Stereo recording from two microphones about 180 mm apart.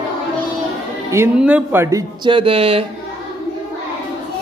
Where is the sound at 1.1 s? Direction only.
10° right (ahead or behind); by 2.8 s 30° right (ahead or behind).